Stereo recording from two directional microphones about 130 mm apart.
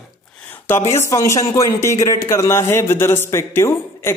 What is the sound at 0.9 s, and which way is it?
A man's voice, 20° left (ahead or behind).